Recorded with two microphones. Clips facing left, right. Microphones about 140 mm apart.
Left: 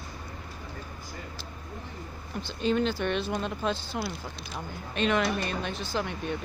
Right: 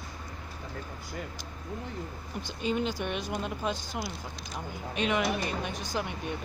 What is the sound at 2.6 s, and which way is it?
Speech, 10° right (ahead or behind).